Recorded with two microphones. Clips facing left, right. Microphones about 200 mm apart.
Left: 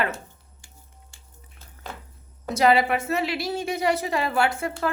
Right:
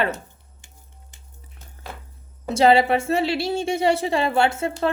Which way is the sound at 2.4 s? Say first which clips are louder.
Right 3 dB; 30° right (ahead or behind).